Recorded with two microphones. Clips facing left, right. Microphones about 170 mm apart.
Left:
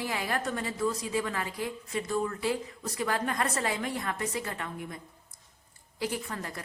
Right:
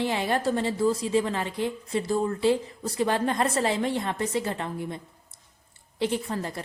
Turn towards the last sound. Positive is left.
turn(degrees=-30)  # may be behind; listen again after turning